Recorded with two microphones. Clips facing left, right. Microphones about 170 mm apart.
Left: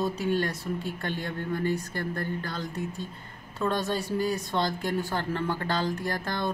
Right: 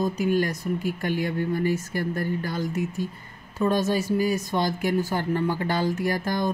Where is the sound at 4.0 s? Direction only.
Centre (ahead or behind).